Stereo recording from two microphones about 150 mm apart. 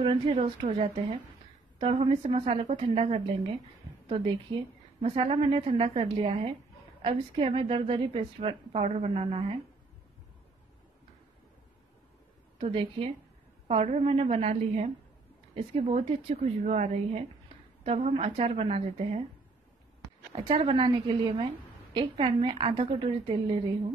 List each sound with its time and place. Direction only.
0.0 s a woman's voice: 35° right (ahead or behind)
12.5 s a woman's voice: 40° right (ahead or behind)
20.3 s a woman's voice: 40° right (ahead or behind)